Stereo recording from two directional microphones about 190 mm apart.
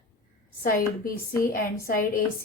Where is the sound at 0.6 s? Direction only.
50° left (ahead or behind).